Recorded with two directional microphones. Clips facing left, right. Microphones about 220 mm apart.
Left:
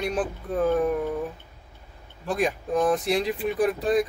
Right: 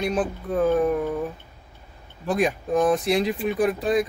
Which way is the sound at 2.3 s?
20° right (ahead or behind).